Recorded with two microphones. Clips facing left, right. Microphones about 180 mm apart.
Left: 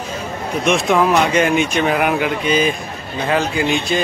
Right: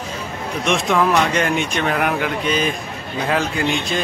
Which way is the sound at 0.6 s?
5° left (ahead or behind).